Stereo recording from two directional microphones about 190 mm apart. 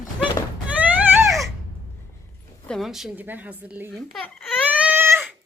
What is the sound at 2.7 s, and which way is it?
A woman's voice, centre (ahead or behind).